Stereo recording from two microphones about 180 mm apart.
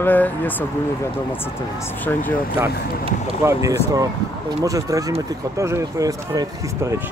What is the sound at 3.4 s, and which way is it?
Speech, 15° right (ahead or behind).